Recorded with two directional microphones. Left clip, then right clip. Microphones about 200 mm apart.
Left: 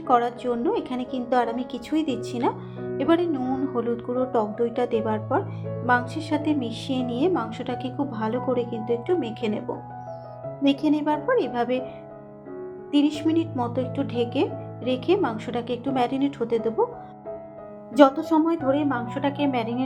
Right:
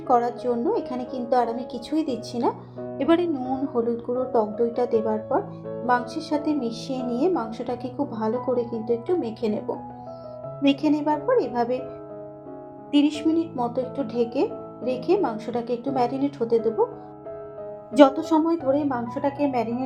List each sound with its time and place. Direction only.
0.4 s speech: 20° left (ahead or behind)
3.0 s a woman's voice: centre (ahead or behind)
3.5 s a woman's voice: 15° left (ahead or behind)
10.6 s a woman's voice: centre (ahead or behind)
10.8 s speech: 20° left (ahead or behind)
12.9 s a woman's voice: centre (ahead or behind)
13.3 s speech: 20° left (ahead or behind)
17.9 s a woman's voice: centre (ahead or behind)
18.3 s speech: 20° left (ahead or behind)